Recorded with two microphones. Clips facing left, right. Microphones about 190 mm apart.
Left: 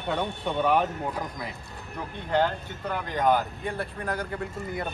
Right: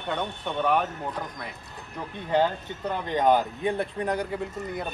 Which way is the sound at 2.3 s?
20° right (ahead or behind).